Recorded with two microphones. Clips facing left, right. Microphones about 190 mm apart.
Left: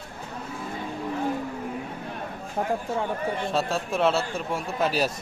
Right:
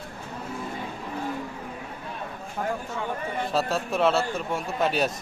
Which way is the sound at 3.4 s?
Centre (ahead or behind).